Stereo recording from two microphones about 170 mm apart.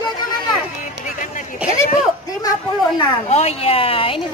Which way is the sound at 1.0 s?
50° left (ahead or behind).